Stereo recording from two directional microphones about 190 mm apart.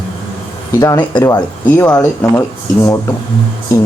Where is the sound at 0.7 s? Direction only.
15° left (ahead or behind).